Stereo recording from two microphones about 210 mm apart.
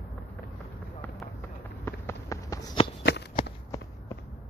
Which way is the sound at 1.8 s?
15° left (ahead or behind).